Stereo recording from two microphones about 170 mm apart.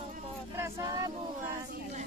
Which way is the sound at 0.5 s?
15° right (ahead or behind).